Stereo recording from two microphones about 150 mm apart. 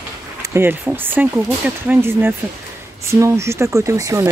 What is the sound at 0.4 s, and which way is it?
Speech, 15° right (ahead or behind).